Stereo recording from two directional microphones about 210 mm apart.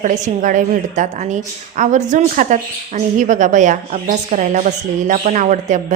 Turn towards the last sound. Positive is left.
turn(degrees=-35)  # may be behind; listen again after turning